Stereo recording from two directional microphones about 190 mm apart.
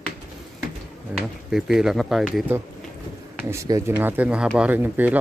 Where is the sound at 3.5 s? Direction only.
15° right (ahead or behind).